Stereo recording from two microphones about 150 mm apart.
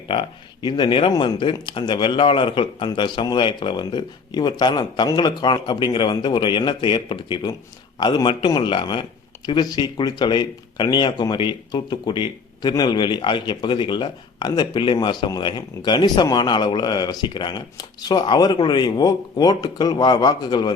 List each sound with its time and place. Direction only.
0.1 s speech: 35° left (ahead or behind)